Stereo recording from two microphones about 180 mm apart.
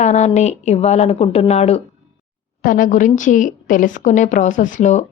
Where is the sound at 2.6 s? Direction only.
50° left (ahead or behind).